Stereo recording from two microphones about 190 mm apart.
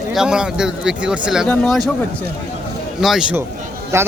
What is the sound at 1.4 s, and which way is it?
Speech, 10° left (ahead or behind).